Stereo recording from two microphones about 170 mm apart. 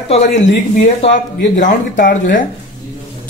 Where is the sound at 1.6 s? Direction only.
55° left (ahead or behind).